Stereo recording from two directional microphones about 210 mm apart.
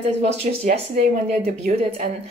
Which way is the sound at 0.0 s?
30° right (ahead or behind).